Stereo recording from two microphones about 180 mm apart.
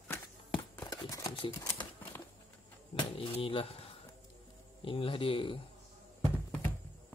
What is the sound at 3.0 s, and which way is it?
Speech, 30° left (ahead or behind).